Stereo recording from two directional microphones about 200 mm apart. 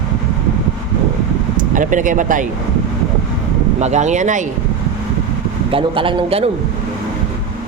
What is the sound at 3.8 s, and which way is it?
Speech, 35° right (ahead or behind).